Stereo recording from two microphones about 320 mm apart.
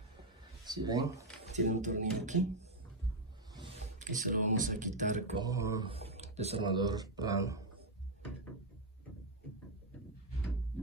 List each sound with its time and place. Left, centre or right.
0.7 s speech: centre
1.5 s speech: right
4.0 s speech: right
5.4 s speech: centre